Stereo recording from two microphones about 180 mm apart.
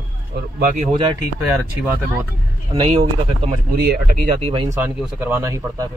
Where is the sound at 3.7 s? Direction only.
60° right (ahead or behind).